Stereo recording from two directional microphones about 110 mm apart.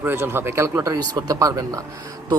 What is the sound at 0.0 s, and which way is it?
A man's voice, 20° right (ahead or behind).